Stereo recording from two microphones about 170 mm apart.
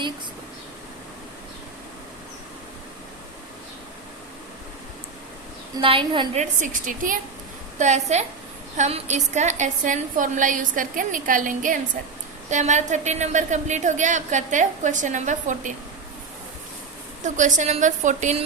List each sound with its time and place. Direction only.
5.7 s a woman's voice: 30° right (ahead or behind)
6.3 s a woman's voice: 45° right (ahead or behind)
17.2 s a woman's voice: 45° right (ahead or behind)